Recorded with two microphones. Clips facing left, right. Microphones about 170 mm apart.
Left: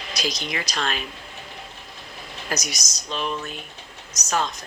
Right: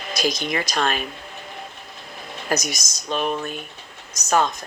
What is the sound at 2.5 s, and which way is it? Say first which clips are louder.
Speech: right 6 dB; 55° right (ahead or behind).